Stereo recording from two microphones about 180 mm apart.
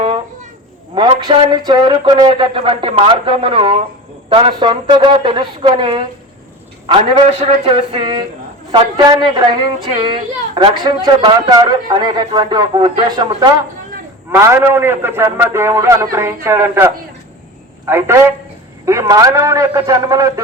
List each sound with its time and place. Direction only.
0.9 s a woman's voice: 25° right (ahead or behind)